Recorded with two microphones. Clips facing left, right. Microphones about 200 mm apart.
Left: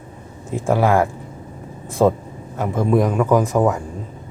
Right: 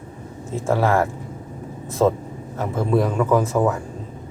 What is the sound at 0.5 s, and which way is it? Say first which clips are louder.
Speech: left 2 dB; 15° left (ahead or behind).